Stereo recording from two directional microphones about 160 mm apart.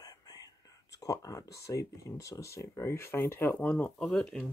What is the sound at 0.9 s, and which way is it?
Speech, 20° left (ahead or behind).